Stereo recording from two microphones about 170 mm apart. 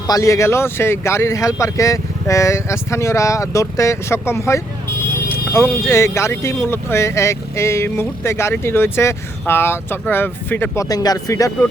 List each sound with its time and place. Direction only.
0.1 s speech: 20° left (ahead or behind)
10.8 s speech: 20° left (ahead or behind)